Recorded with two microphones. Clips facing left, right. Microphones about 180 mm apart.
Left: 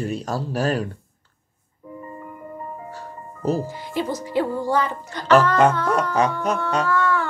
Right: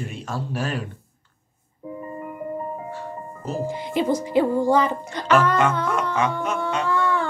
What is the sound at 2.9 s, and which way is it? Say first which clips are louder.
Music: right 4 dB; 40° left (ahead or behind).